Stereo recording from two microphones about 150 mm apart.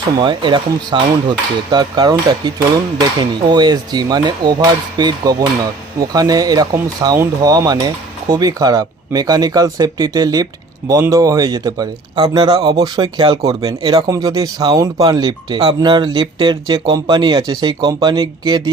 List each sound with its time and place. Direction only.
0.2 s speech: 30° right (ahead or behind)